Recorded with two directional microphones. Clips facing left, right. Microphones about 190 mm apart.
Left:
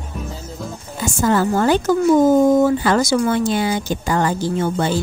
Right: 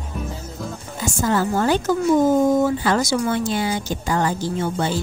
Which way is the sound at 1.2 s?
70° left (ahead or behind).